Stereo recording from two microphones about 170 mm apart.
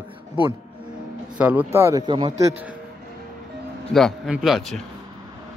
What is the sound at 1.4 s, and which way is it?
Speech, 10° right (ahead or behind).